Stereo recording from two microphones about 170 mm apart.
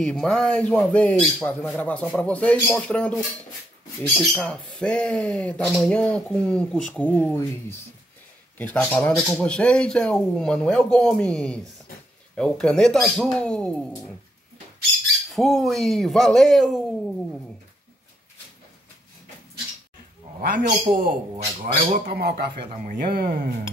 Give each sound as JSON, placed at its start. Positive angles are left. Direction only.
{"t": 0.0, "sound": "speech", "side_deg": 5}
{"t": 4.3, "sound": "speech", "side_deg": 5}
{"t": 8.5, "sound": "speech", "side_deg": 10}
{"t": 15.3, "sound": "speech", "side_deg": 0}
{"t": 20.3, "sound": "a man's voice", "side_deg": -50}
{"t": 22.1, "sound": "speech", "side_deg": -75}